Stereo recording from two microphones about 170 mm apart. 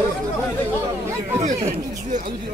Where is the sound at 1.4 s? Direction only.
45° right (ahead or behind).